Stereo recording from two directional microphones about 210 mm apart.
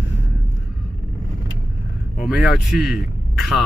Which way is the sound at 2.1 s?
Centre (ahead or behind).